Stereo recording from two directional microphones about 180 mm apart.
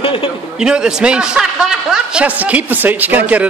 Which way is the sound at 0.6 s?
5° right (ahead or behind).